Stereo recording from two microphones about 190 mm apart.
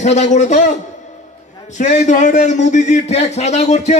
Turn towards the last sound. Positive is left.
turn(degrees=35)  # may be behind; listen again after turning